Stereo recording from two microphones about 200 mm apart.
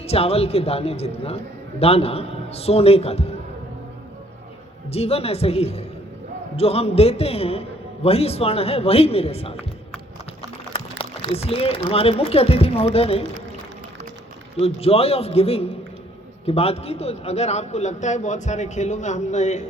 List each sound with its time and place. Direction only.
0.0 s a man's voice: 30° left (ahead or behind)
4.9 s a man's voice: 30° left (ahead or behind)
10.7 s a sound: 25° left (ahead or behind)
11.9 s speech: 30° left (ahead or behind)
14.5 s a man's voice: 30° left (ahead or behind)